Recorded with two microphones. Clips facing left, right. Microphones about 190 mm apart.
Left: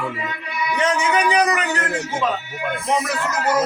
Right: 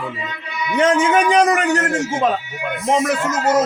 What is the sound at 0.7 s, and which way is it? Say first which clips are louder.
A man's voice: right 6 dB; 50° right (ahead or behind).